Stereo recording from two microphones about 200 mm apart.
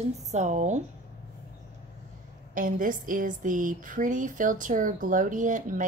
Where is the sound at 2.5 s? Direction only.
40° right (ahead or behind).